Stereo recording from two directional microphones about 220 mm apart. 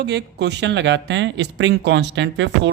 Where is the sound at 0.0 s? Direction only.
50° right (ahead or behind).